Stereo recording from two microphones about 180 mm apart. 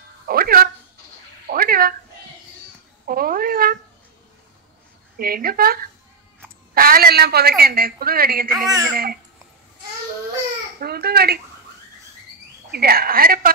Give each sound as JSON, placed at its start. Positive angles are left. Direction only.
{"t": 0.3, "sound": "speech", "side_deg": -55}
{"t": 1.5, "sound": "cat", "side_deg": -55}
{"t": 3.1, "sound": "speech", "side_deg": -55}
{"t": 5.1, "sound": "a woman's voice", "side_deg": -55}
{"t": 8.6, "sound": "speech", "side_deg": -20}
{"t": 8.9, "sound": "a woman's voice", "side_deg": -55}
{"t": 10.8, "sound": "a sound", "side_deg": -60}
{"t": 12.7, "sound": "a woman's voice", "side_deg": -55}